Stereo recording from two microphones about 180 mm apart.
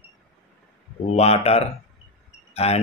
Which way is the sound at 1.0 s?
35° left (ahead or behind).